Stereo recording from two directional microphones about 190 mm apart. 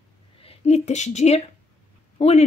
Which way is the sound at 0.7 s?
35° left (ahead or behind).